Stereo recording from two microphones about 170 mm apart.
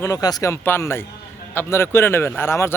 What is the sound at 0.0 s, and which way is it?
A man's voice, 20° left (ahead or behind).